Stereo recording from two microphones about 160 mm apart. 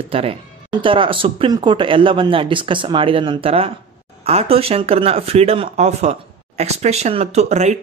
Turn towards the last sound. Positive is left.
turn(degrees=-45)  # may be behind; listen again after turning